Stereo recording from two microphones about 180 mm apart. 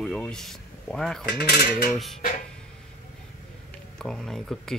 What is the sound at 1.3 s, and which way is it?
Cutlery, 65° left (ahead or behind).